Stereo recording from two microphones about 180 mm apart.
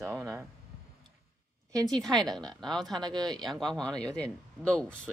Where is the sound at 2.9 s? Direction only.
20° right (ahead or behind).